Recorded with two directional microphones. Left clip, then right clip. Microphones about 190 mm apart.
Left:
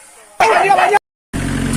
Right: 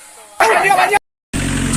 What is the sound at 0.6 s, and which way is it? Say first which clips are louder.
Vehicle: left 1 dB; 40° left (ahead or behind).